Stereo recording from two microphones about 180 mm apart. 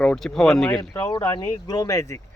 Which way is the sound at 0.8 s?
20° left (ahead or behind).